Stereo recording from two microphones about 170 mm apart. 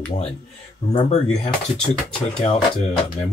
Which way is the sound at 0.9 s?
40° left (ahead or behind).